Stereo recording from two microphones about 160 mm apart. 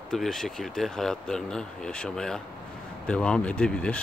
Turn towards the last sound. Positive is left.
turn(degrees=5)  # may be behind; listen again after turning